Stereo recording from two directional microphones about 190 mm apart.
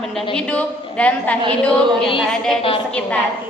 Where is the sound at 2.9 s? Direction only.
5° left (ahead or behind).